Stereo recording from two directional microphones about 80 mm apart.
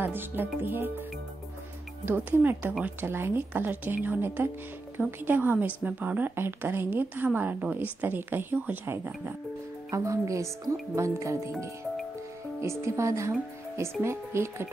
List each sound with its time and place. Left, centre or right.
0.0 s speech: right
2.0 s speech: right
9.8 s speech: right
12.5 s speech: right